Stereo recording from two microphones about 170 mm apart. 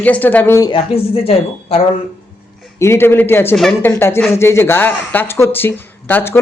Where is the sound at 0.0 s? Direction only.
10° left (ahead or behind).